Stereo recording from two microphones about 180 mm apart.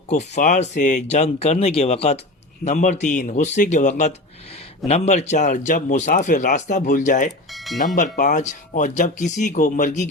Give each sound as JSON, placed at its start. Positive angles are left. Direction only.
{"t": 0.1, "sound": "a man's voice", "side_deg": 40}
{"t": 7.3, "sound": "speech", "side_deg": 0}
{"t": 7.9, "sound": "speech", "side_deg": 45}